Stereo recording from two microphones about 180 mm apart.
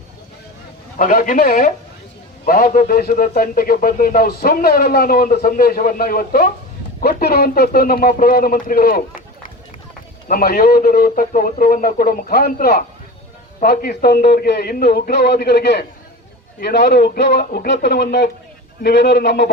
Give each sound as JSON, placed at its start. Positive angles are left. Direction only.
{"t": 0.9, "sound": "a man's voice", "side_deg": 50}
{"t": 10.2, "sound": "a man's voice", "side_deg": 55}